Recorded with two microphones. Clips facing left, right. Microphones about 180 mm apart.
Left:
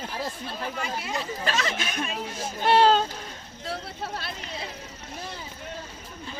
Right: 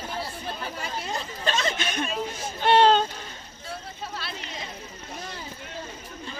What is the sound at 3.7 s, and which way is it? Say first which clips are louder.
Vehicle: left 3 dB; 60° left (ahead or behind).